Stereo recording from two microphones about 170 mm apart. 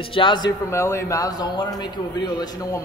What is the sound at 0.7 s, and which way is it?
Speech, 15° left (ahead or behind).